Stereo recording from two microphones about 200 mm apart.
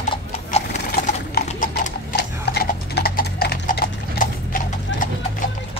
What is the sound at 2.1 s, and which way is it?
Horse, 55° left (ahead or behind).